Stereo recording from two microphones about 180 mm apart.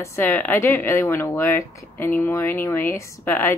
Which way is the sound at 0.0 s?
15° left (ahead or behind).